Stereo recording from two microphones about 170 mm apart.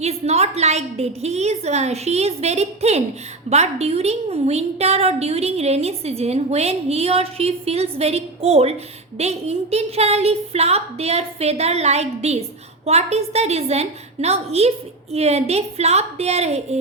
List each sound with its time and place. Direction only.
0.0 s a woman's voice: 40° right (ahead or behind)